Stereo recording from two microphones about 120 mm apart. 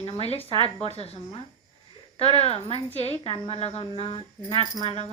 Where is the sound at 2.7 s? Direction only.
50° right (ahead or behind).